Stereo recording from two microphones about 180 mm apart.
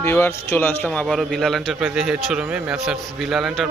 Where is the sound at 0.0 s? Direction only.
15° left (ahead or behind).